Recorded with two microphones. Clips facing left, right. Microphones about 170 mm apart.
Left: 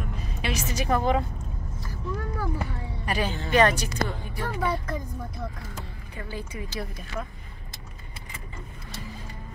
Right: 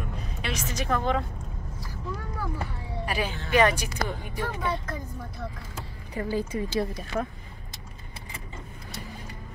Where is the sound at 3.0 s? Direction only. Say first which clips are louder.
Left 2 dB; 5° right (ahead or behind).